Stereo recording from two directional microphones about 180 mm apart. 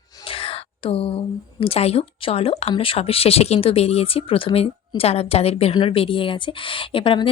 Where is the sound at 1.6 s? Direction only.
35° left (ahead or behind).